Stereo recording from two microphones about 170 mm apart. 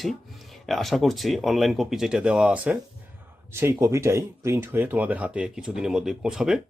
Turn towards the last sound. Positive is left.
turn(degrees=-5)  # may be behind; listen again after turning